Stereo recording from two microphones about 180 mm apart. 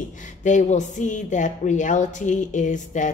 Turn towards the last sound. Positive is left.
turn(degrees=45)  # may be behind; listen again after turning